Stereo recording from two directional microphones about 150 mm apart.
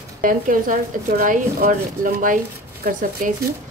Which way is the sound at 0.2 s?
65° right (ahead or behind).